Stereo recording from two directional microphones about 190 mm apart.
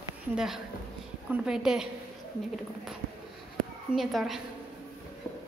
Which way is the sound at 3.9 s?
Centre (ahead or behind).